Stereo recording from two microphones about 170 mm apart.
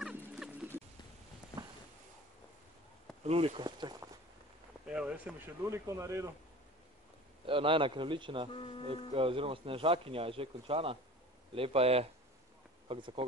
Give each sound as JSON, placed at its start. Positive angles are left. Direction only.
{"t": 0.0, "sound": "music", "side_deg": -5}
{"t": 3.3, "sound": "a man's voice", "side_deg": -35}
{"t": 4.8, "sound": "speech", "side_deg": -5}
{"t": 7.4, "sound": "a man's voice", "side_deg": -30}
{"t": 8.5, "sound": "speech", "side_deg": 30}
{"t": 8.8, "sound": "speech", "side_deg": -30}